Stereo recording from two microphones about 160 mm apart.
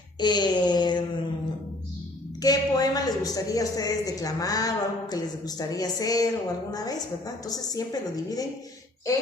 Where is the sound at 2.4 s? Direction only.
25° left (ahead or behind).